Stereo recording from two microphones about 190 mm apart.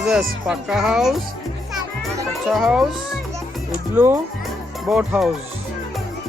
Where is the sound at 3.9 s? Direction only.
10° right (ahead or behind).